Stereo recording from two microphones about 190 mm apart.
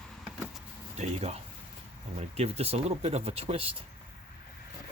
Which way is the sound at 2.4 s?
35° right (ahead or behind).